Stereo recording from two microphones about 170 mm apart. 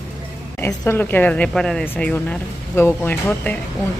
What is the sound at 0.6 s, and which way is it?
Speech, 10° left (ahead or behind).